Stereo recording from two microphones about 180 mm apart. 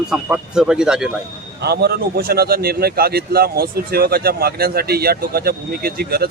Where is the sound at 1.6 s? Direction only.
65° right (ahead or behind).